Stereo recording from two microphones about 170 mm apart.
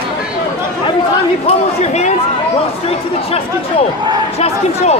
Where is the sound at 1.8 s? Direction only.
40° left (ahead or behind).